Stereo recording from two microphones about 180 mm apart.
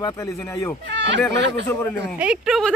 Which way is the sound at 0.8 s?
75° right (ahead or behind).